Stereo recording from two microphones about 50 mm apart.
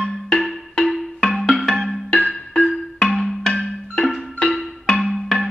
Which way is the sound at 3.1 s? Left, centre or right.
Centre.